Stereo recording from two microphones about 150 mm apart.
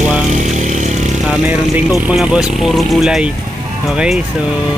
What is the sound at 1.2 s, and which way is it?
Speech, 10° right (ahead or behind).